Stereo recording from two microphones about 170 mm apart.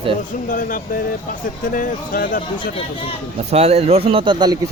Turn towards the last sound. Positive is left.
turn(degrees=-25)  # may be behind; listen again after turning